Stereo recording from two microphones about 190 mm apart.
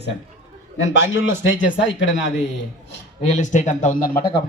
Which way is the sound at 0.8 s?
80° left.